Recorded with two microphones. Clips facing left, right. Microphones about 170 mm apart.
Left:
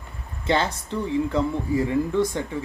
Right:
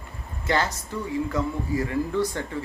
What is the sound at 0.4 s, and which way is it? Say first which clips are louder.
Speech: left 2 dB; 25° left (ahead or behind).